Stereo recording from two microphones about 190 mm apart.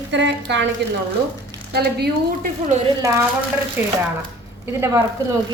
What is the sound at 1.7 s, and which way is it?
Speech, 55° right (ahead or behind).